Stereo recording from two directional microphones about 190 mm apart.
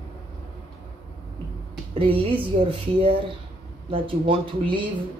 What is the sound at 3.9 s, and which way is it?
Speech, 25° right (ahead or behind).